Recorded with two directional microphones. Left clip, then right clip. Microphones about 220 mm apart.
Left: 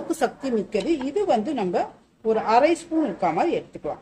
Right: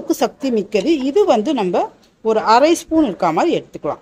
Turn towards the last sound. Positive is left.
turn(degrees=-40)  # may be behind; listen again after turning